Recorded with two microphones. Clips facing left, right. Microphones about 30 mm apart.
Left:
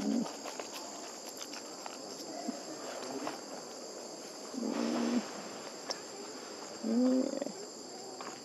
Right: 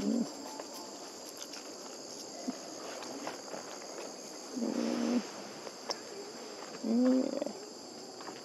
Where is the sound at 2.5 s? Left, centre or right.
Centre.